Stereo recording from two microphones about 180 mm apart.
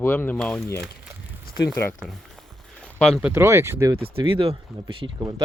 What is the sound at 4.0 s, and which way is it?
Speech, 30° right (ahead or behind).